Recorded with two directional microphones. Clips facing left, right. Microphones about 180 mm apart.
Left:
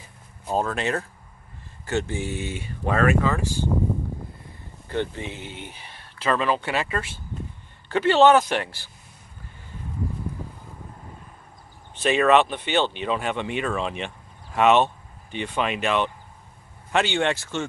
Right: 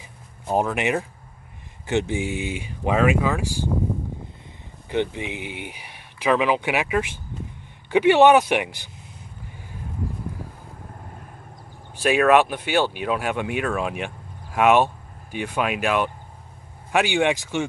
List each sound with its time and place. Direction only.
0.5 s speech: 15° right (ahead or behind)
4.8 s speech: 15° right (ahead or behind)
11.9 s speech: 10° right (ahead or behind)